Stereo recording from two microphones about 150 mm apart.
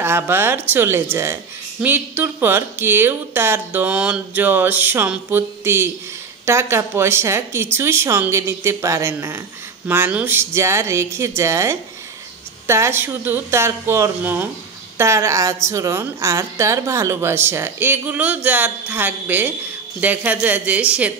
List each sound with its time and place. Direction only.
0.0 s speech: 15° right (ahead or behind)